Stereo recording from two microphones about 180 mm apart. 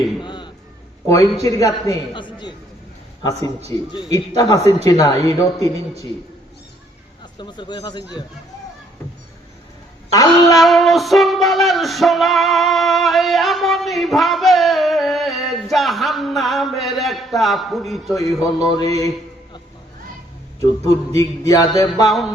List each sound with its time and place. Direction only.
0.2 s chop: 25° left (ahead or behind)
1.0 s a man's voice: 20° left (ahead or behind)
3.7 s a man's voice: 20° left (ahead or behind)
7.3 s a man's voice: 25° left (ahead or behind)
10.1 s a man's voice: 20° left (ahead or behind)
10.6 s music: centre (ahead or behind)
18.1 s a man's voice: 20° left (ahead or behind)
21.2 s a man's voice: 20° left (ahead or behind)